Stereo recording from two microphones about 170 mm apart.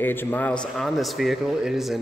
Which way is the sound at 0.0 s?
10° left (ahead or behind).